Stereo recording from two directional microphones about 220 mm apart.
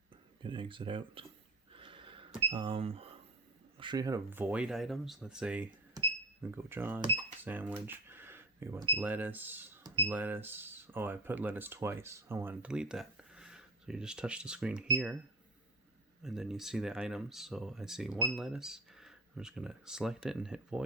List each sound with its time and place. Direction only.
0.4 s speech: 20° right (ahead or behind)
1.7 s a sound: 20° right (ahead or behind)
2.5 s speech: 25° right (ahead or behind); by 14.8 s 5° right (ahead or behind)
16.2 s speech: centre (ahead or behind)